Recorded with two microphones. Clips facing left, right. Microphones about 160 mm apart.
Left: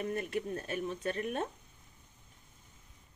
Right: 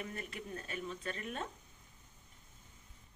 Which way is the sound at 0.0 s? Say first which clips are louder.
Left 9 dB; 45° left (ahead or behind).